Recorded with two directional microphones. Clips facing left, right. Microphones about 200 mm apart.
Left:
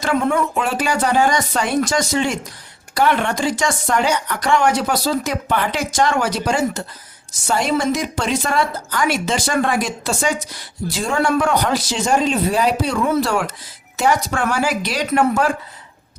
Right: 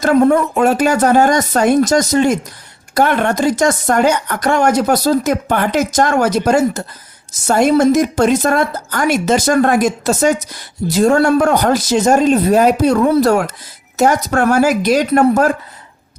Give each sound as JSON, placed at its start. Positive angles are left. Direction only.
{"t": 0.0, "sound": "speech", "side_deg": -40}